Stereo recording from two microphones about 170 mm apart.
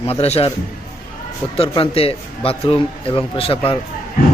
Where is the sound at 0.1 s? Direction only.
35° left (ahead or behind).